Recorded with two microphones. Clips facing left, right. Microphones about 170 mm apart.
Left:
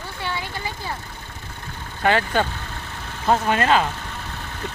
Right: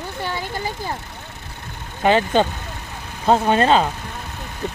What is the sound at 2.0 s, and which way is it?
Speech, 20° right (ahead or behind).